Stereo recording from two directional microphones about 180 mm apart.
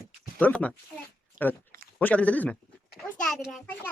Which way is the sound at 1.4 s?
45° right (ahead or behind).